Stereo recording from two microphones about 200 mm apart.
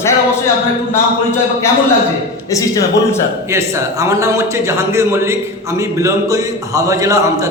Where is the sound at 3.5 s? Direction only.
15° right (ahead or behind).